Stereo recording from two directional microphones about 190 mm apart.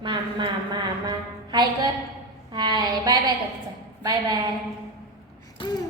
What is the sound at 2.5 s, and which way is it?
A woman's voice, 20° right (ahead or behind).